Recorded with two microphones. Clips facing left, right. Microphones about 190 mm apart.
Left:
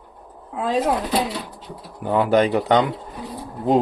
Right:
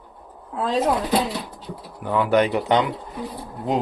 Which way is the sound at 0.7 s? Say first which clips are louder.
Even; 10° left (ahead or behind).